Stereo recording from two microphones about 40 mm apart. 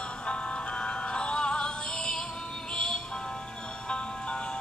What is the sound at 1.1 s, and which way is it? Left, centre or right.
Music, left.